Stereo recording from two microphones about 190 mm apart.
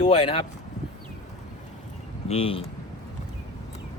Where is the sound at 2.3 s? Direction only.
30° left (ahead or behind).